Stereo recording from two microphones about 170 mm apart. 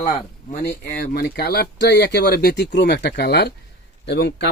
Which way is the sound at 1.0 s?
65° left (ahead or behind).